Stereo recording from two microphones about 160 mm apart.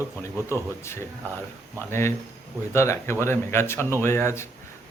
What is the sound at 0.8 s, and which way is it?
A man's voice, 15° left (ahead or behind).